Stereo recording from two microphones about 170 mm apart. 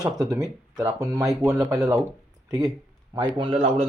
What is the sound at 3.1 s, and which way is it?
Speech, 30° right (ahead or behind).